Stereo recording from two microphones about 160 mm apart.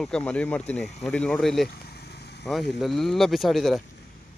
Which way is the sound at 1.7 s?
85° left.